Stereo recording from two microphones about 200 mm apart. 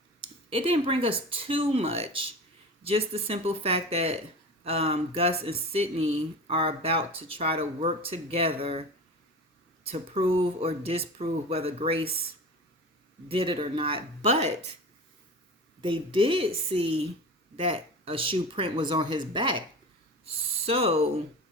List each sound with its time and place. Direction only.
0.5 s speech: 25° right (ahead or behind)
9.8 s speech: 30° right (ahead or behind)
13.2 s speech: 30° right (ahead or behind)
15.8 s speech: 25° right (ahead or behind)
20.7 s speech: 30° right (ahead or behind)